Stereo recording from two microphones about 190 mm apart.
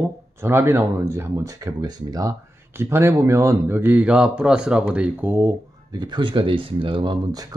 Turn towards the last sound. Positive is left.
turn(degrees=-20)  # may be behind; listen again after turning